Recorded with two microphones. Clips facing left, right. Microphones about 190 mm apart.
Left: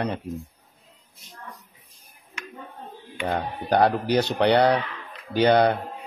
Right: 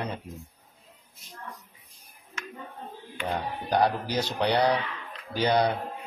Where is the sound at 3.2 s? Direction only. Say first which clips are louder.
Left 4 dB; 65° left (ahead or behind).